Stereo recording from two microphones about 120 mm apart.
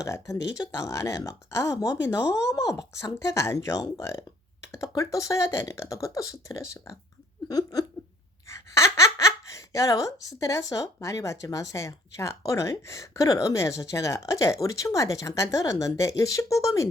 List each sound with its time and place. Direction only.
0.0 s speech: 25° left (ahead or behind)
7.4 s hiccup: 30° left (ahead or behind)
8.4 s speech: 25° left (ahead or behind)